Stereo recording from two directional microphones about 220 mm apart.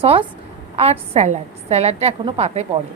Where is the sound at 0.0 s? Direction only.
25° right (ahead or behind).